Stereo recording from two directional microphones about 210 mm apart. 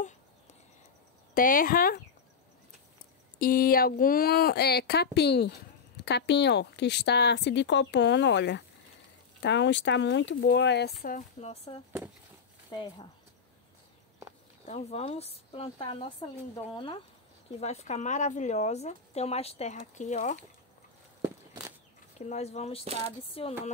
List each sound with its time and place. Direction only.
1.3 s speech: 40° left (ahead or behind)
3.3 s speech: 45° left (ahead or behind)
14.7 s speech: 30° left (ahead or behind)
22.2 s speech: 30° left (ahead or behind)